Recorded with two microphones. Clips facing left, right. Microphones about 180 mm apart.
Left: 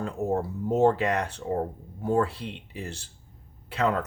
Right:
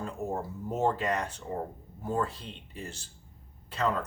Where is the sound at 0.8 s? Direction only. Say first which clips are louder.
Left 6 dB; 65° left (ahead or behind).